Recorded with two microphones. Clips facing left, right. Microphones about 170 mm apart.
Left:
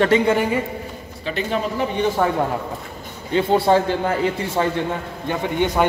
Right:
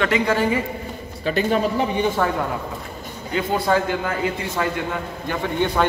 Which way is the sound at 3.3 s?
30° left (ahead or behind).